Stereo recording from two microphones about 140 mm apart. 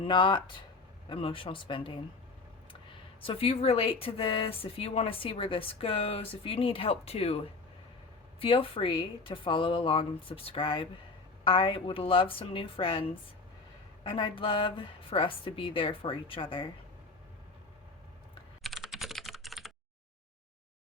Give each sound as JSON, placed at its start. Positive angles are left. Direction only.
{"t": 0.0, "sound": "speech", "side_deg": 35}
{"t": 18.6, "sound": "computer keyboard", "side_deg": 0}